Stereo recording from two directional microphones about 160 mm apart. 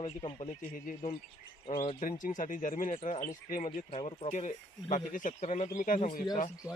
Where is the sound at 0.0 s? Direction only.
30° left (ahead or behind).